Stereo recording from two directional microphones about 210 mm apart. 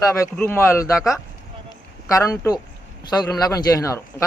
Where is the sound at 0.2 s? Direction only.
10° left (ahead or behind).